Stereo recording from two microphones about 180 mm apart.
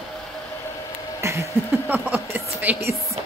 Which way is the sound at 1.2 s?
15° right (ahead or behind).